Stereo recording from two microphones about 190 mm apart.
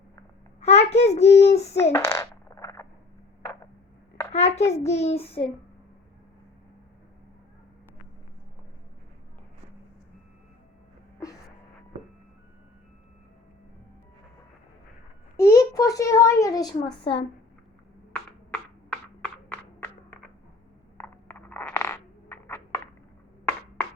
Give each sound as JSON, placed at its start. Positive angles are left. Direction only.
{"t": 0.6, "sound": "a child's voice", "side_deg": 35}
{"t": 1.9, "sound": "fart", "side_deg": 15}
{"t": 4.3, "sound": "a sound", "side_deg": 35}
{"t": 4.7, "sound": "child singing", "side_deg": 35}
{"t": 15.4, "sound": "a child's voice", "side_deg": 15}
{"t": 18.1, "sound": "a sound", "side_deg": 5}